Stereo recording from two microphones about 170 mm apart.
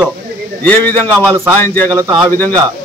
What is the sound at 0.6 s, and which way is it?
A man's voice, 10° left (ahead or behind).